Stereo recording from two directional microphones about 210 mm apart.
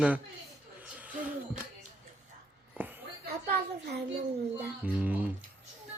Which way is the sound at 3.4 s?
50° right (ahead or behind).